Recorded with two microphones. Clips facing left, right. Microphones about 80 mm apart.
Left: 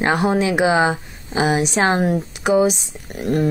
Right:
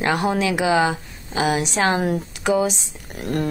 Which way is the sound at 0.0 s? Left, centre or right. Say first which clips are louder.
Left 3 dB; left.